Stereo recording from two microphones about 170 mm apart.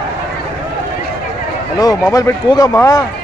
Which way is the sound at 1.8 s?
20° left (ahead or behind).